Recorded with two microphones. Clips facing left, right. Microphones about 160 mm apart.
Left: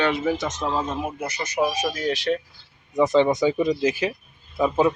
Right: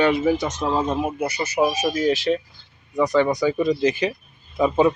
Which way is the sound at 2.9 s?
20° left (ahead or behind).